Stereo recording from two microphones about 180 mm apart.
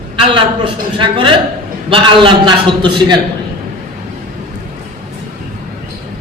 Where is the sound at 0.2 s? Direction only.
30° right (ahead or behind).